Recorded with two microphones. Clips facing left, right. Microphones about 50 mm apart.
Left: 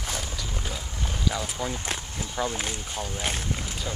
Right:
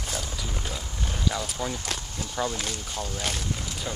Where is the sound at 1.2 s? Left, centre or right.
Centre.